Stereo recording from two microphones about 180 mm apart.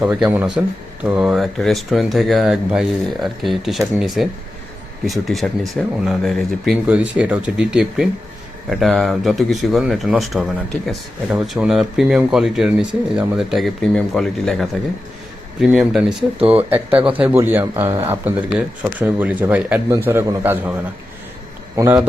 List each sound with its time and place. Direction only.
0.0 s speech: 10° right (ahead or behind)
21.8 s speech: 20° right (ahead or behind)